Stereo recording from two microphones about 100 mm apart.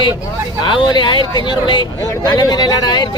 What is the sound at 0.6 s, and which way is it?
Speech, 50° left (ahead or behind).